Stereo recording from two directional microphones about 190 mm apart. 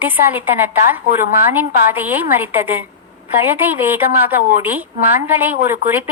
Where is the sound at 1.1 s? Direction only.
50° left (ahead or behind).